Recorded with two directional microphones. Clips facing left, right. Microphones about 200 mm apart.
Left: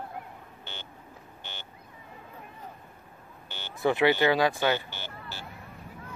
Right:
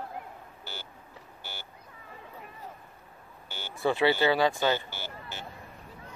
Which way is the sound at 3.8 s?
15° left (ahead or behind).